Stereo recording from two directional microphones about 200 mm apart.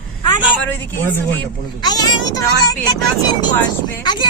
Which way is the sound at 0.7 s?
10° left (ahead or behind).